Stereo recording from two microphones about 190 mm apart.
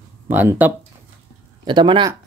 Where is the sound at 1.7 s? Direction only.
25° right (ahead or behind).